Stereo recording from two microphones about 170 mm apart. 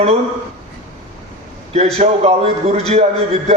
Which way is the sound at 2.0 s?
40° right (ahead or behind).